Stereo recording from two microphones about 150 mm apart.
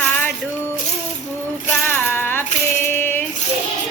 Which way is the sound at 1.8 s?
15° left (ahead or behind).